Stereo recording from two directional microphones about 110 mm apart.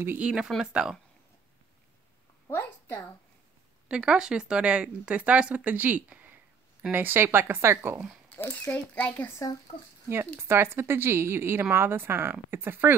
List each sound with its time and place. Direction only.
0.0 s speech: 20° right (ahead or behind)
0.5 s speech: 5° right (ahead or behind)
2.4 s a sound: 20° left (ahead or behind)
3.9 s speech: 5° right (ahead or behind)
8.4 s speech: 15° left (ahead or behind)
10.0 s speech: 20° right (ahead or behind)